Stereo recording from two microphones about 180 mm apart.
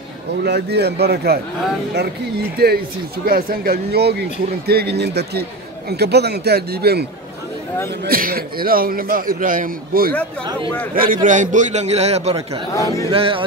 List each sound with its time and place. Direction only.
0.4 s speech: 65° right (ahead or behind)
2.5 s speech: 60° right (ahead or behind)
8.1 s a man's voice: 55° right (ahead or behind)
11.2 s a man's voice: 45° right (ahead or behind)
12.7 s speech: 20° left (ahead or behind)
13.1 s a man's voice: 30° right (ahead or behind)